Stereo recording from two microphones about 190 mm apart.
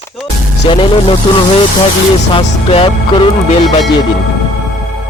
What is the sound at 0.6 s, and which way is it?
Speech, 25° left (ahead or behind).